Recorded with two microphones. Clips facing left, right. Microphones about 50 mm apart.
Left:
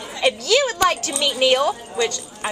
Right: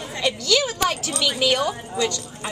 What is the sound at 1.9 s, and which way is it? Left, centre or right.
Speech, left.